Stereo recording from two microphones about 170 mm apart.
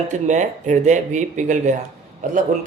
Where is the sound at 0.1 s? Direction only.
45° right (ahead or behind).